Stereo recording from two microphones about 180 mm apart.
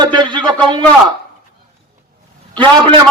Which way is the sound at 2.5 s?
25° right (ahead or behind).